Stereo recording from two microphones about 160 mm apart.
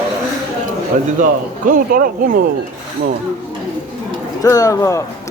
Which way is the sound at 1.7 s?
60° right (ahead or behind).